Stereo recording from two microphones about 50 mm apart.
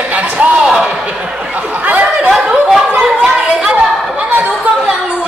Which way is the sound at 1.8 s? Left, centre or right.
Right.